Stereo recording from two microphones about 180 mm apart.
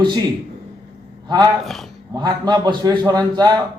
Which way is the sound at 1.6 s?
Centre (ahead or behind).